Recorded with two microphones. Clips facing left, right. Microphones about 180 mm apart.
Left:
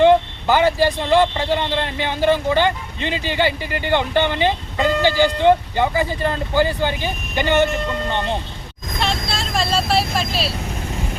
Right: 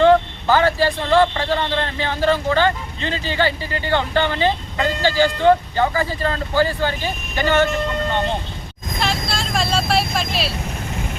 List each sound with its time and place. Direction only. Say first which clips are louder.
0.0 s speech: even; 15° left (ahead or behind)
9.0 s vehicle: even; centre (ahead or behind)